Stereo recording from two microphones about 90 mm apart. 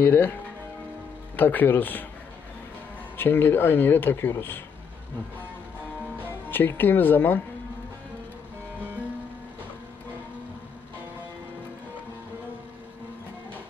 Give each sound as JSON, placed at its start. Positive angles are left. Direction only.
{"t": 0.0, "sound": "speech", "side_deg": 20}
{"t": 3.2, "sound": "speech", "side_deg": 25}
{"t": 6.5, "sound": "speech", "side_deg": 25}